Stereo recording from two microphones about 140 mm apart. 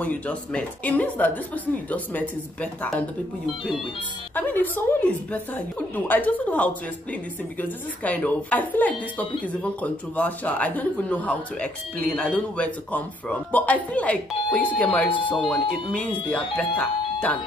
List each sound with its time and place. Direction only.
0.0 s a woman's voice: 10° left (ahead or behind)
4.4 s a woman's voice: 10° left (ahead or behind)